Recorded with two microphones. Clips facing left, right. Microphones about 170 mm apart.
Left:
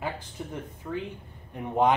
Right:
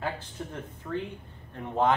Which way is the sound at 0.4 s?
10° left (ahead or behind).